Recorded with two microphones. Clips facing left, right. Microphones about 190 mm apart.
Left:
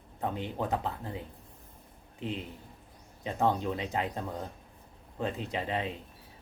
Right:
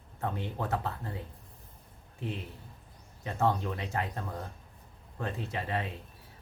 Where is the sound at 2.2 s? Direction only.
20° left (ahead or behind).